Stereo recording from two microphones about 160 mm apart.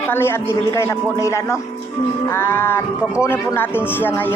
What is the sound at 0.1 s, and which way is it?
A man's voice, 15° left (ahead or behind).